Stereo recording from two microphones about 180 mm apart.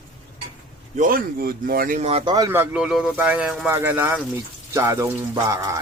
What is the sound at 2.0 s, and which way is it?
Speech, 35° right (ahead or behind).